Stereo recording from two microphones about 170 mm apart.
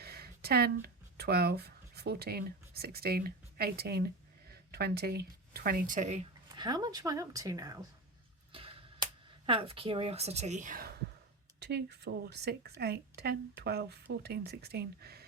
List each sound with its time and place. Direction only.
0.0 s speech: 65° right (ahead or behind); by 6.2 s 45° right (ahead or behind)
6.6 s a woman's voice: 25° right (ahead or behind)
8.5 s a sound: 30° right (ahead or behind)
9.5 s a woman's voice: 35° right (ahead or behind); by 10.9 s 55° right (ahead or behind)
11.6 s speech: 75° right (ahead or behind)